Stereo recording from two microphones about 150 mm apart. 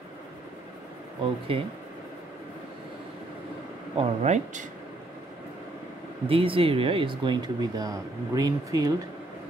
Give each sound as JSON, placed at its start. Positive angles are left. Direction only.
{"t": 1.5, "sound": "speech", "side_deg": -40}
{"t": 3.9, "sound": "speech", "side_deg": -45}
{"t": 6.2, "sound": "speech", "side_deg": -35}